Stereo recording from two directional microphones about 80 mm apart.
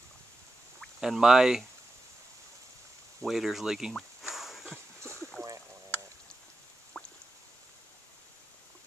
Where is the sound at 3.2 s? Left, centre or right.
Centre.